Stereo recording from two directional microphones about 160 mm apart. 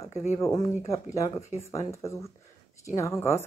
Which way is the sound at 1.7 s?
20° left (ahead or behind).